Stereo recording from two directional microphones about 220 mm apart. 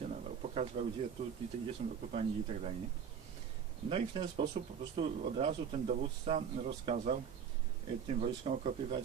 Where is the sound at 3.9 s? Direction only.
25° right (ahead or behind).